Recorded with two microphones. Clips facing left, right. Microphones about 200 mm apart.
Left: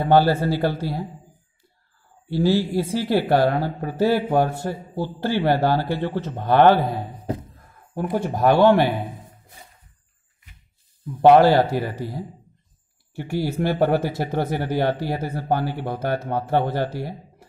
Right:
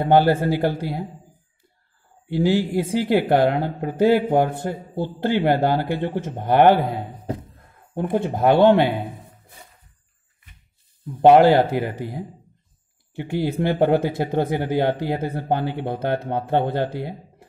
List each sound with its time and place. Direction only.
0.0 s speech: 20° right (ahead or behind)
2.2 s speech: 15° right (ahead or behind)
11.1 s speech: 15° right (ahead or behind)